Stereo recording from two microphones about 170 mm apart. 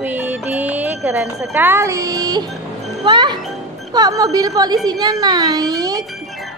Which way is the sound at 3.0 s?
25° right (ahead or behind).